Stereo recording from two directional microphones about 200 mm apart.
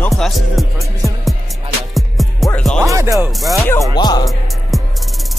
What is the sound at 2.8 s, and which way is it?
Speech, 15° right (ahead or behind).